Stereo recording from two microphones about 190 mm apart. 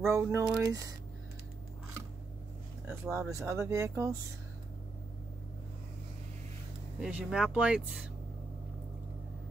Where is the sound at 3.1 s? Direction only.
15° right (ahead or behind).